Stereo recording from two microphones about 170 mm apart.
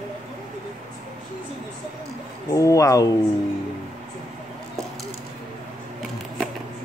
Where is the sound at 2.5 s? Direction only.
20° left (ahead or behind).